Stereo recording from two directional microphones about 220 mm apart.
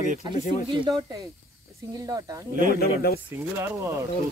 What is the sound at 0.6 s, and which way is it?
Speech, 20° right (ahead or behind).